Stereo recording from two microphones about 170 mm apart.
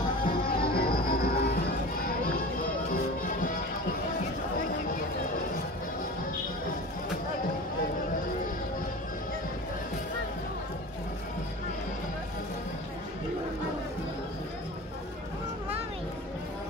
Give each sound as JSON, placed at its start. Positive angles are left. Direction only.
{"t": 0.2, "sound": "music", "side_deg": 65}